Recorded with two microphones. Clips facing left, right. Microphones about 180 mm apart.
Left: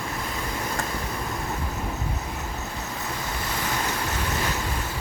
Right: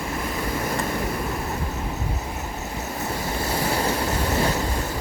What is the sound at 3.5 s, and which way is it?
Vehicle, 30° right (ahead or behind).